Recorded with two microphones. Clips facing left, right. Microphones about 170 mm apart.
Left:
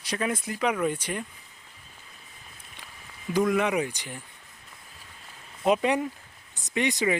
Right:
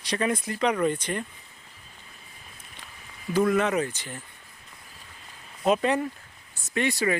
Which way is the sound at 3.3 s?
10° left (ahead or behind).